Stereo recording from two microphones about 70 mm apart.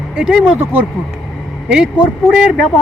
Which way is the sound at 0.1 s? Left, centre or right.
Centre.